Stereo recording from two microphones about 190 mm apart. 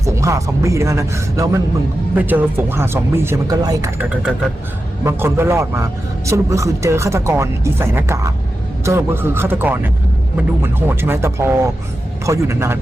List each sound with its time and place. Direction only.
0.0 s a man's voice: 15° right (ahead or behind)